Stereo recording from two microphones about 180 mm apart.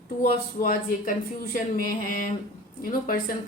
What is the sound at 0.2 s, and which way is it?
Speech, 55° left (ahead or behind).